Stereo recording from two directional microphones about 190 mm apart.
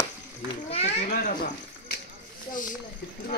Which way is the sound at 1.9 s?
55° left (ahead or behind).